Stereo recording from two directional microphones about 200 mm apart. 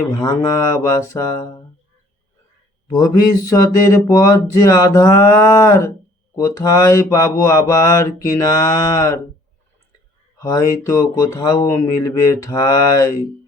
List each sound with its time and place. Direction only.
0.2 s mantra: 20° left (ahead or behind)
1.1 s speech: 15° left (ahead or behind)
2.9 s speech: 15° left (ahead or behind)
10.3 s speech: 15° left (ahead or behind)